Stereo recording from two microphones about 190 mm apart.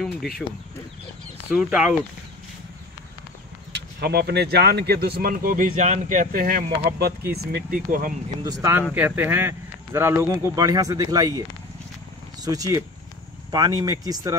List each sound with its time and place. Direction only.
1.5 s speech: 5° right (ahead or behind)
3.7 s speech: 55° right (ahead or behind)
8.5 s speech: 15° right (ahead or behind)
12.4 s speech: 20° right (ahead or behind)